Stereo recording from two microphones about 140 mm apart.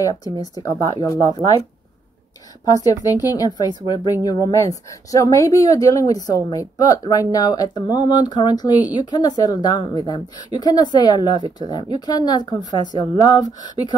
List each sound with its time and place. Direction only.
0.0 s speech: 25° left (ahead or behind)
2.6 s speech: 25° left (ahead or behind)